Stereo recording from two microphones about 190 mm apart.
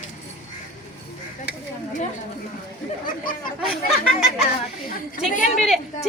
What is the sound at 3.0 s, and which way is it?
Speech, 45° left (ahead or behind).